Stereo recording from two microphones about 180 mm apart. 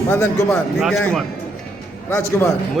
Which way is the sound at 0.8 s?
5° left (ahead or behind).